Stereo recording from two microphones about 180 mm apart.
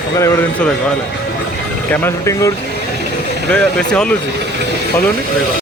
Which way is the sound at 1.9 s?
15° left (ahead or behind).